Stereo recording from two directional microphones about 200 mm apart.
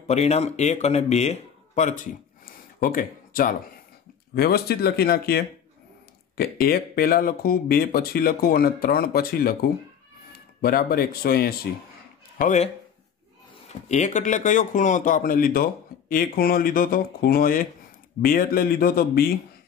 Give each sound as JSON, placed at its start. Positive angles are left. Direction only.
{"t": 0.0, "sound": "speech", "side_deg": 35}
{"t": 12.4, "sound": "speech", "side_deg": 40}
{"t": 13.7, "sound": "speech", "side_deg": 35}